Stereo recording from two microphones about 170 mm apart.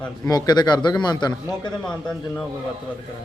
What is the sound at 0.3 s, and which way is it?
A man's voice, 25° left (ahead or behind).